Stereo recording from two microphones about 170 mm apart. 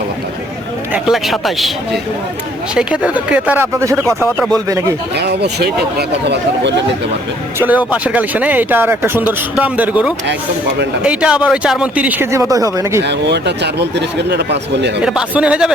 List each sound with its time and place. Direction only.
0.9 s a man's voice: centre (ahead or behind)
2.7 s speech: 5° right (ahead or behind)
5.1 s speech: 80° right
7.6 s speech: 10° right (ahead or behind)
13.0 s speech: 90° right
15.0 s a man's voice: 5° right (ahead or behind)